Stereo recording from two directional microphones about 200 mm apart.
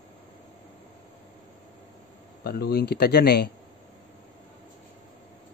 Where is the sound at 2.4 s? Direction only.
50° left (ahead or behind).